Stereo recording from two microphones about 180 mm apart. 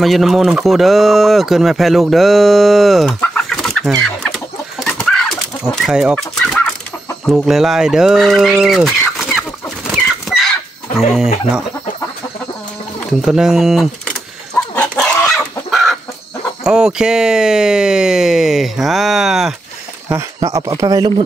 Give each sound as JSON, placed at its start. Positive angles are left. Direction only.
{"t": 0.0, "sound": "speech", "side_deg": 0}
{"t": 4.0, "sound": "chicken", "side_deg": 5}
{"t": 7.2, "sound": "speech", "side_deg": 0}
{"t": 10.2, "sound": "chicken", "side_deg": 0}
{"t": 13.2, "sound": "speech", "side_deg": -5}
{"t": 14.8, "sound": "chicken", "side_deg": 5}
{"t": 16.6, "sound": "speech", "side_deg": -5}
{"t": 20.3, "sound": "speech", "side_deg": -20}